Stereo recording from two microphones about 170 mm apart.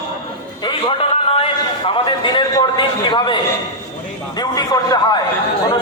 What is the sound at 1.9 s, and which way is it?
A man's voice, 25° left (ahead or behind).